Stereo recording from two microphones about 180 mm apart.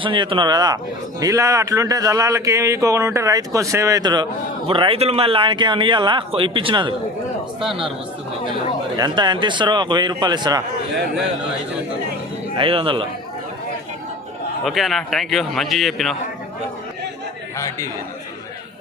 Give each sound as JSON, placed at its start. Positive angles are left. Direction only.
{"t": 0.0, "sound": "a man's voice", "side_deg": -30}
{"t": 7.6, "sound": "a man's voice", "side_deg": 0}
{"t": 9.0, "sound": "a man's voice", "side_deg": -25}
{"t": 12.5, "sound": "a man's voice", "side_deg": -30}
{"t": 14.6, "sound": "a man's voice", "side_deg": 0}